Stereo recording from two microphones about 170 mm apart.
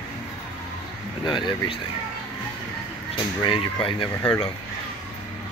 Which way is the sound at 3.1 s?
30° left (ahead or behind).